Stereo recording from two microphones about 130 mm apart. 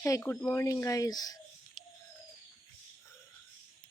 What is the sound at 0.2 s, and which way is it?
Speech, 15° left (ahead or behind).